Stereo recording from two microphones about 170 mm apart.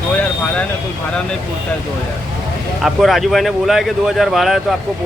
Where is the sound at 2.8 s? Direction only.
Centre (ahead or behind).